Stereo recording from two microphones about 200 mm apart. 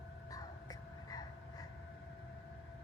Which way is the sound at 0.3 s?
20° left (ahead or behind).